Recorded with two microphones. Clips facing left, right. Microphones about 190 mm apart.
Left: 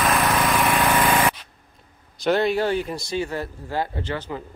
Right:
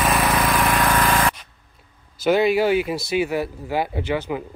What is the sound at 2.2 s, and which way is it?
Speech, 5° right (ahead or behind).